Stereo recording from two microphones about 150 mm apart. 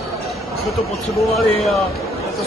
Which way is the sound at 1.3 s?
Centre (ahead or behind).